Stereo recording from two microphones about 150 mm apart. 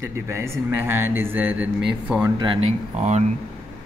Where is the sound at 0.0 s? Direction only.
20° right (ahead or behind).